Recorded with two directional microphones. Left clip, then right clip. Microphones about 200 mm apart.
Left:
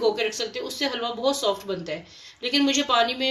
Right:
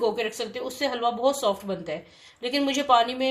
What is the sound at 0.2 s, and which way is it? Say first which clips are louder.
A woman's voice: left 2 dB; 35° right (ahead or behind).